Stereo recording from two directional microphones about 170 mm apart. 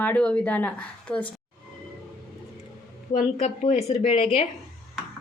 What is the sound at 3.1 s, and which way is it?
A woman's voice, 45° left (ahead or behind).